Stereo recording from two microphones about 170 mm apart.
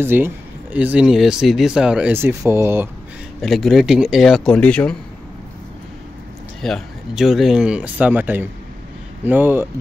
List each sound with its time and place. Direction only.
0.0 s speech: 10° right (ahead or behind)
3.3 s speech: centre (ahead or behind)
6.6 s speech: centre (ahead or behind)